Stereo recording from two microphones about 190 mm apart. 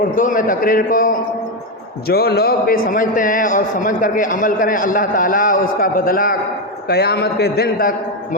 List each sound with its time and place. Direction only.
0.2 s a man's voice: 45° left (ahead or behind)